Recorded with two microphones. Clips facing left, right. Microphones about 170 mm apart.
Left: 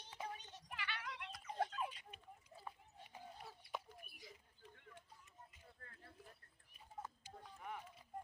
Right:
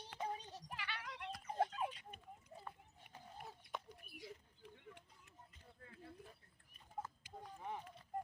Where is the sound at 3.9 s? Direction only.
70° right (ahead or behind).